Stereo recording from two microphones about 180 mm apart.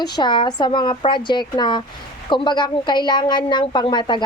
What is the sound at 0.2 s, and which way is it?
A woman's voice, 25° left (ahead or behind).